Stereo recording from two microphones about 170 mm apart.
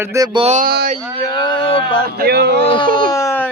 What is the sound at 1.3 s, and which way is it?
Speech, 25° left (ahead or behind).